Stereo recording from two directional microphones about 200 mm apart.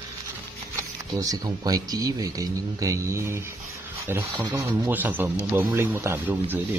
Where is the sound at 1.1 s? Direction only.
20° right (ahead or behind).